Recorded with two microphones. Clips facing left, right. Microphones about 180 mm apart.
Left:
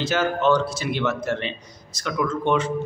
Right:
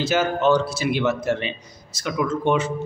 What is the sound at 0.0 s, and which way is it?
A man's voice, 10° right (ahead or behind).